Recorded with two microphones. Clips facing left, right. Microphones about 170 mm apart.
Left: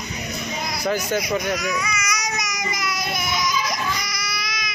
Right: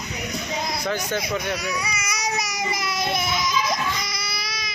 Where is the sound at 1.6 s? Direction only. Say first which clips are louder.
Left 3 dB; 30° right (ahead or behind).